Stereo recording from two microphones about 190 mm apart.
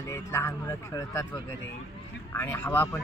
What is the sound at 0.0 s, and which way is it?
Speech, 15° left (ahead or behind).